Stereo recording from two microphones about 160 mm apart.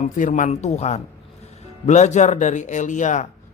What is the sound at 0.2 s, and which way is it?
A man's voice, 50° left (ahead or behind).